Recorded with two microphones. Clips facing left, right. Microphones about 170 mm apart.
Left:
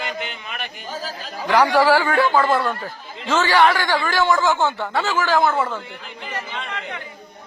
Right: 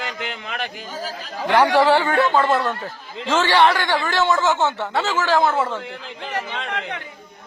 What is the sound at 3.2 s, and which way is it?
A man's voice, 30° right (ahead or behind).